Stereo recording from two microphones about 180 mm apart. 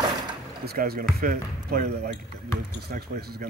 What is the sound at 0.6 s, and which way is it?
Speech, 60° right (ahead or behind).